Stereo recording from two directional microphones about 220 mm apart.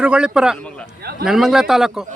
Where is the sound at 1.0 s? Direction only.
45° right (ahead or behind).